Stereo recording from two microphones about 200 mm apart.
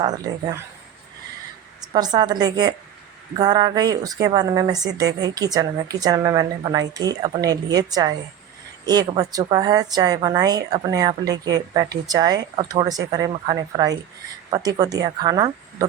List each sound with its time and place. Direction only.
1.8 s a woman's voice: 20° right (ahead or behind)